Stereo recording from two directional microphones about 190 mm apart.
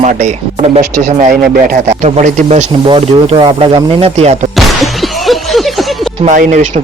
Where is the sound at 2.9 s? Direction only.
25° right (ahead or behind).